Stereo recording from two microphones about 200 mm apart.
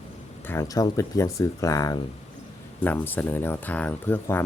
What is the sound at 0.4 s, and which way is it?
Speech, 15° left (ahead or behind).